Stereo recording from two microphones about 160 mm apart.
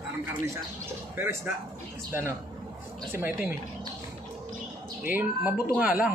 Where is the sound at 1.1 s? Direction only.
15° right (ahead or behind).